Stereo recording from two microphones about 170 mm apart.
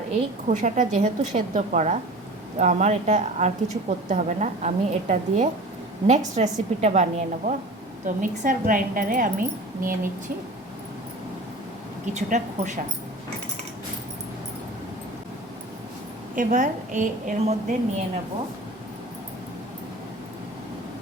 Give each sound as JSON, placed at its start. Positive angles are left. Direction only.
{"t": 0.4, "sound": "a woman's voice", "side_deg": -45}
{"t": 12.1, "sound": "a woman's voice", "side_deg": -45}
{"t": 16.3, "sound": "a woman's voice", "side_deg": -50}